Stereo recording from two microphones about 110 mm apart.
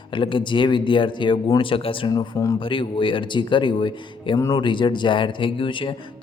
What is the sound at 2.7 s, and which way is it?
Speech, 50° left (ahead or behind).